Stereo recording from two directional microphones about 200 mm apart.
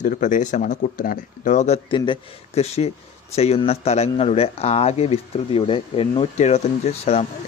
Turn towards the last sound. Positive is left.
turn(degrees=30)  # may be behind; listen again after turning